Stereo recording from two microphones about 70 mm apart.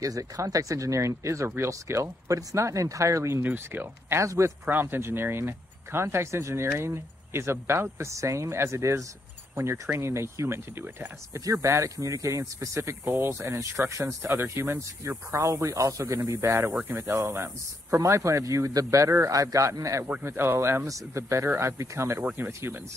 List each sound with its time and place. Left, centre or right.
0.0 s speech: right
3.4 s speech: right
13.4 s speech: right
20.2 s speech: right
20.8 s speech: right